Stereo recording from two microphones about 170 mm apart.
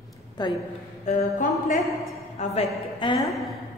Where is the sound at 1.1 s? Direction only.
50° left (ahead or behind).